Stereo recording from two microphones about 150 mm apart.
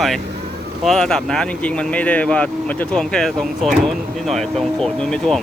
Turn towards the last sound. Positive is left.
turn(degrees=5)  # may be behind; listen again after turning